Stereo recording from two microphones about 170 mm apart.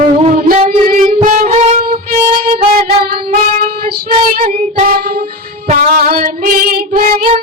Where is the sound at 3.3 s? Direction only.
55° right (ahead or behind).